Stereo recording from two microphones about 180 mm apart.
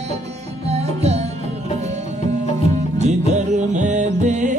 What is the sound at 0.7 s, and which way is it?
Music, 35° right (ahead or behind).